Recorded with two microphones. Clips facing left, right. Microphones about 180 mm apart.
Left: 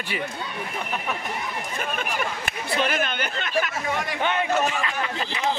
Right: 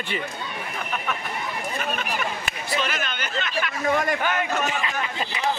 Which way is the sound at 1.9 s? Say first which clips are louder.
Even; 50° left (ahead or behind).